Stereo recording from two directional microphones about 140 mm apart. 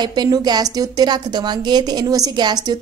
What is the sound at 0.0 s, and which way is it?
A woman's voice, 30° right (ahead or behind).